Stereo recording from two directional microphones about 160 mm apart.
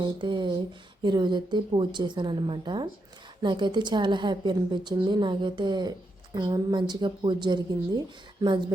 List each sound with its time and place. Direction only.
0.0 s a woman's voice: 30° right (ahead or behind)